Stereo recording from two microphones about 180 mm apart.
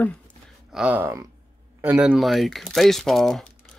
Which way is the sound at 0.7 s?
10° right (ahead or behind).